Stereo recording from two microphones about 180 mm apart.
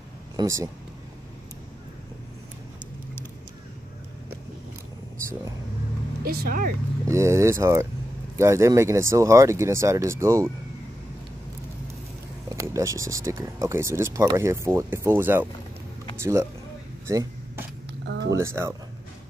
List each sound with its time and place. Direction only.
0.4 s speech: 15° right (ahead or behind)
6.2 s speech: 55° right (ahead or behind)
7.1 s speech: 15° right (ahead or behind)
12.4 s speech: 15° right (ahead or behind)
18.0 s a sound: 75° right (ahead or behind)
18.3 s speech: 15° right (ahead or behind)